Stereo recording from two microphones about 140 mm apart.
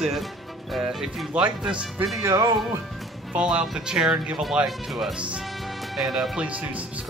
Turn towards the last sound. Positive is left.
turn(degrees=-10)  # may be behind; listen again after turning